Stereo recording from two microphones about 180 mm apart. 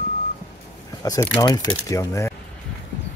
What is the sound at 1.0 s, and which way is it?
Speech, 20° left (ahead or behind).